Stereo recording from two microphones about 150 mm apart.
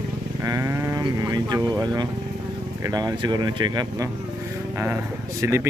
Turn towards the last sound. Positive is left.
turn(degrees=-20)  # may be behind; listen again after turning